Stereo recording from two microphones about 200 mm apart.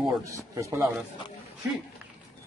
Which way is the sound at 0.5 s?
15° right (ahead or behind).